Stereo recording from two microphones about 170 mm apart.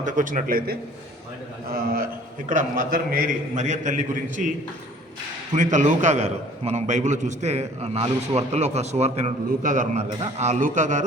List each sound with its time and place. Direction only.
0.0 s a man's voice: 50° right (ahead or behind)
5.5 s a man's voice: 45° right (ahead or behind)